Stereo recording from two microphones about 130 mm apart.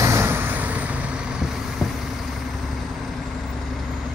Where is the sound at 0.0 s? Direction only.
20° right (ahead or behind).